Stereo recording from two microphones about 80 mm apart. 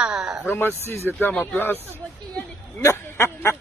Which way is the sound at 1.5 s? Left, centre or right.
Left.